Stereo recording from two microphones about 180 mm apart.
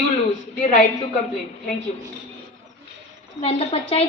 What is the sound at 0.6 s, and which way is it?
Speech, 45° left (ahead or behind).